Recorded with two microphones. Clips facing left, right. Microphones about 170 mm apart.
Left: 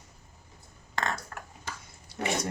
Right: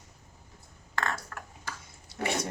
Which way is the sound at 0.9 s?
20° left (ahead or behind).